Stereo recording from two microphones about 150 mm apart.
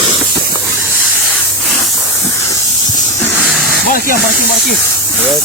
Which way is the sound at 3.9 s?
65° left (ahead or behind).